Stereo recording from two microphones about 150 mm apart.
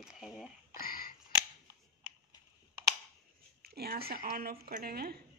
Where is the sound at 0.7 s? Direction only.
75° left (ahead or behind).